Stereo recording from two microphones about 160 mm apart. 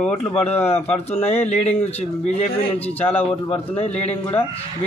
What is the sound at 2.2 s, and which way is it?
Speech, 45° left (ahead or behind).